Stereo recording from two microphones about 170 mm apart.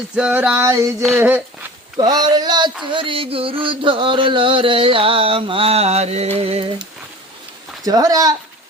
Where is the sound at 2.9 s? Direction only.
30° right (ahead or behind).